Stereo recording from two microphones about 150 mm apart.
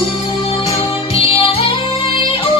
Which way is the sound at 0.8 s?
40° left (ahead or behind).